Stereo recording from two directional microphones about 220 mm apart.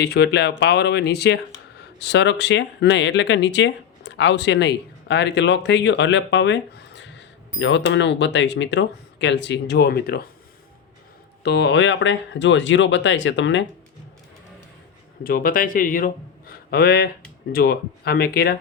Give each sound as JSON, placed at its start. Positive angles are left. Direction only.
{"t": 0.0, "sound": "speech", "side_deg": 50}
{"t": 11.4, "sound": "speech", "side_deg": 50}
{"t": 15.2, "sound": "a man's voice", "side_deg": 40}